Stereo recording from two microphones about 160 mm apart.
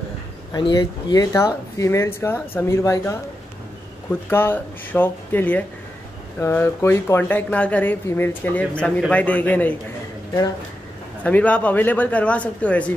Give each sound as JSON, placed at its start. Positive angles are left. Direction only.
{"t": 0.5, "sound": "speech", "side_deg": 30}
{"t": 11.2, "sound": "speech", "side_deg": 10}